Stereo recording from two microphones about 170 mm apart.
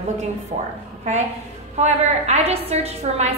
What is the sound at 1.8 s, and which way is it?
A woman's voice, 40° right (ahead or behind).